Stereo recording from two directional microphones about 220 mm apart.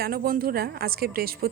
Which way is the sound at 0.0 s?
45° right (ahead or behind).